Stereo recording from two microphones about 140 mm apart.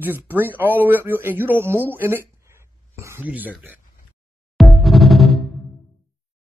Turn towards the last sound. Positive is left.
turn(degrees=0)  # may be behind; listen again after turning